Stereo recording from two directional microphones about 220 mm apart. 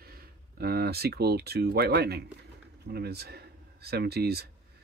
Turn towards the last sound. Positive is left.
turn(degrees=-45)  # may be behind; listen again after turning